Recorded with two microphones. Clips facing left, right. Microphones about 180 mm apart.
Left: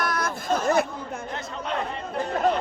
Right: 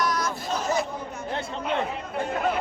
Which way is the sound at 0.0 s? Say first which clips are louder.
Right 1 dB; 55° left (ahead or behind).